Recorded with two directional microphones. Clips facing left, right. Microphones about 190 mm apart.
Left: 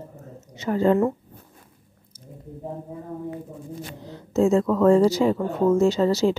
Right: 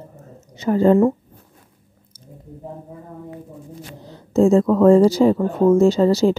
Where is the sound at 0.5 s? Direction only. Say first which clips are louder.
Right 5 dB; 35° right (ahead or behind).